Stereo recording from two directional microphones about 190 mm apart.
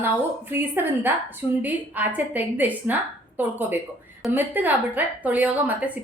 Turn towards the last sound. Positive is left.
turn(degrees=-10)  # may be behind; listen again after turning